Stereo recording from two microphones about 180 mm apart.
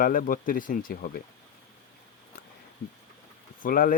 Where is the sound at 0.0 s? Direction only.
50° left (ahead or behind).